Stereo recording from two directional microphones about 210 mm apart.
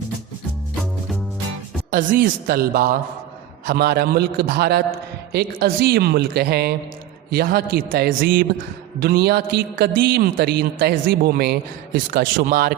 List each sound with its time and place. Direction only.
1.9 s a man's voice: 40° right (ahead or behind)